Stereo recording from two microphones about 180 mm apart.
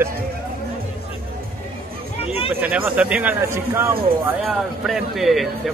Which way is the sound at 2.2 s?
30° left (ahead or behind).